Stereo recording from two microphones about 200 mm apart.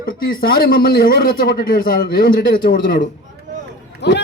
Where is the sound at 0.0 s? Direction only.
45° left (ahead or behind).